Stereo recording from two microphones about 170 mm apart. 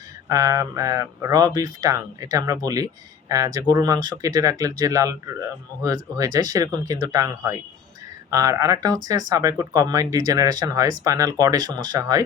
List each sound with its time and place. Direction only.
0.3 s speech: 20° right (ahead or behind)